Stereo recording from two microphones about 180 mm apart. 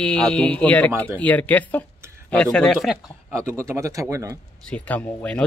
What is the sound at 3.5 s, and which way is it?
Speech, 15° right (ahead or behind).